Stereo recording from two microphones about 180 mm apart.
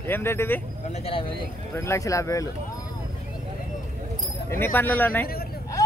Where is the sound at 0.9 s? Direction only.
35° left (ahead or behind).